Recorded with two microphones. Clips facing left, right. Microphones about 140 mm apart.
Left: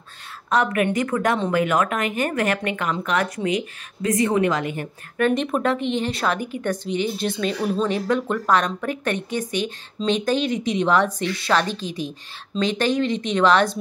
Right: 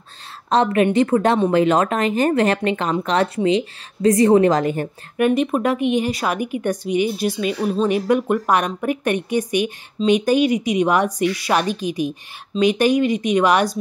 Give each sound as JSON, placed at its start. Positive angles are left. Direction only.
{"t": 0.5, "sound": "speech", "side_deg": -30}
{"t": 5.1, "sound": "speech", "side_deg": -10}